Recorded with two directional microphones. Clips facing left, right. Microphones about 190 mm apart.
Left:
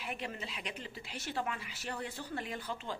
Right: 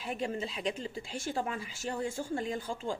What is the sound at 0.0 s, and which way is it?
Speech, 30° right (ahead or behind).